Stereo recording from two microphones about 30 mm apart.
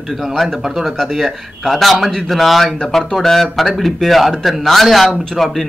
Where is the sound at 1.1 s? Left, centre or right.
Centre.